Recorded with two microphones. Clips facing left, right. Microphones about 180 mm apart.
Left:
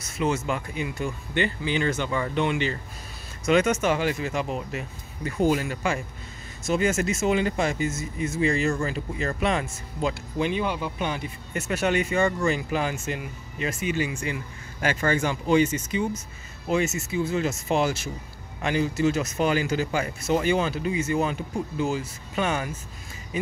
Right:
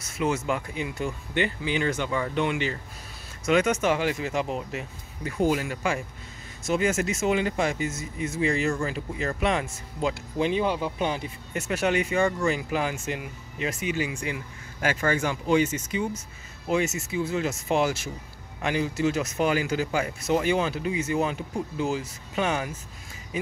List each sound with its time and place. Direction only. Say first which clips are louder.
0.2 s speech: even; 15° right (ahead or behind)
5.2 s speech: left 1 dB; 10° right (ahead or behind)
10.4 s speech: right 2 dB; 30° right (ahead or behind)
11.5 s speech: left 1 dB; 15° right (ahead or behind)